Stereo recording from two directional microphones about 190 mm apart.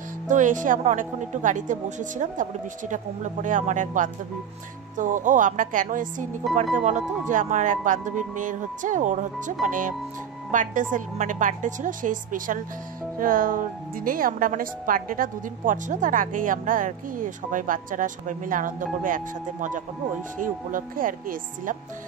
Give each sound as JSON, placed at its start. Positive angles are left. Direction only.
{"t": 0.3, "sound": "a woman's voice", "side_deg": -40}